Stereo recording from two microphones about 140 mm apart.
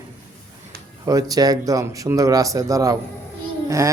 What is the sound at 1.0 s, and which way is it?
Speech, 25° right (ahead or behind).